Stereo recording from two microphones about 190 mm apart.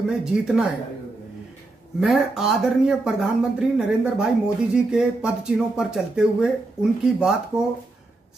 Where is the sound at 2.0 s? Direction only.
Centre (ahead or behind).